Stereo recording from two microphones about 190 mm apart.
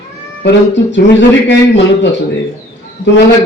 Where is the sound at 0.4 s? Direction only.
65° left (ahead or behind).